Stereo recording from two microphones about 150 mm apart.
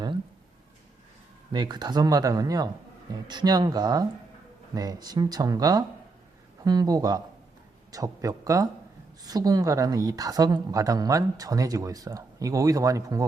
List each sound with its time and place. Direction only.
1.5 s a woman's voice: 30° right (ahead or behind)